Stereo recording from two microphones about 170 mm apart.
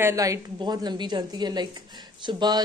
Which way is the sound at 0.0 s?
20° right (ahead or behind).